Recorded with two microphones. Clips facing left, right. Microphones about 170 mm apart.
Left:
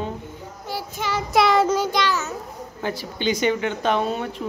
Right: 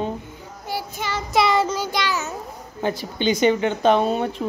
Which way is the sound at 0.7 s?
10° right (ahead or behind).